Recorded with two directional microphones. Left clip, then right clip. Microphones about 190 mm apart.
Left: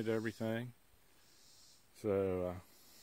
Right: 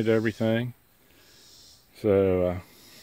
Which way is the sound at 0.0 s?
5° left (ahead or behind).